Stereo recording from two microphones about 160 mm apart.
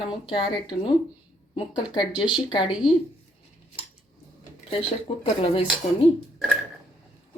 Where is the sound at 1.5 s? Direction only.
30° left (ahead or behind).